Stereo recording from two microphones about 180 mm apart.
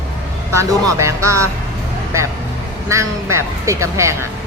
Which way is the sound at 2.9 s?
15° right (ahead or behind).